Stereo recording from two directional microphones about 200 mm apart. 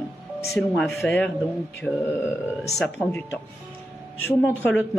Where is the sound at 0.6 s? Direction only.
Centre (ahead or behind).